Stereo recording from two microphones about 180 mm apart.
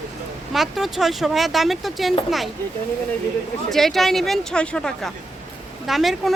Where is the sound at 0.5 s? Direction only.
Centre (ahead or behind).